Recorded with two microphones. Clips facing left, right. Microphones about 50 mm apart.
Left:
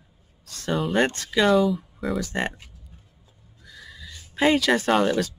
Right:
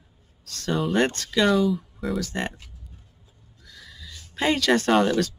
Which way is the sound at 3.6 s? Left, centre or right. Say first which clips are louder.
Left 2 dB; centre.